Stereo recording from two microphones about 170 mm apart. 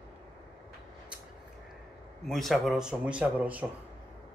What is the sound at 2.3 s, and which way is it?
A man's voice, centre (ahead or behind).